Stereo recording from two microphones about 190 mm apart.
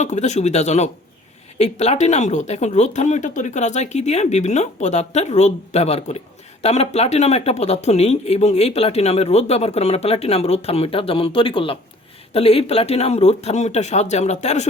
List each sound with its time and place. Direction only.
0.0 s speech: 40° left (ahead or behind)